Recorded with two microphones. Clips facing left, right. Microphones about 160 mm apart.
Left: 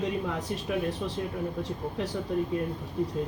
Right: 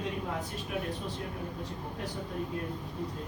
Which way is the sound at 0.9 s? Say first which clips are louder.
Left 5 dB; 75° left (ahead or behind).